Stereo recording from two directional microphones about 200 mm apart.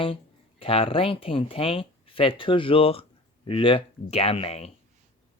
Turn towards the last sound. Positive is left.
turn(degrees=30)  # may be behind; listen again after turning